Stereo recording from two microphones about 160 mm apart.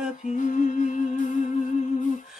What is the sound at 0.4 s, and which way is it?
Humming, 50° left (ahead or behind).